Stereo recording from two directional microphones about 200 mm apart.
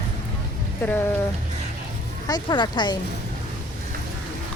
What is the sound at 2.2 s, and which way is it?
Speech, 20° left (ahead or behind).